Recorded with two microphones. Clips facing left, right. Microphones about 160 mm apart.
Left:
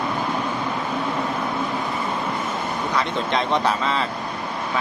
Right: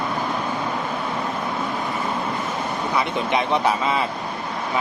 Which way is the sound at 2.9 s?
10° right (ahead or behind).